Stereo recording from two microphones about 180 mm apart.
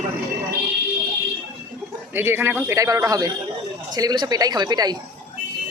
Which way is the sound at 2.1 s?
15° right (ahead or behind).